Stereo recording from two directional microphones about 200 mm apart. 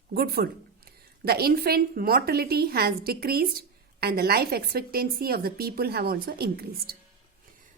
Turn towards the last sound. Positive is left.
turn(degrees=-50)  # may be behind; listen again after turning